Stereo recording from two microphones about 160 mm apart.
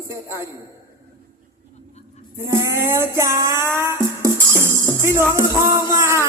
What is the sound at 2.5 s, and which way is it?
Music, 15° right (ahead or behind).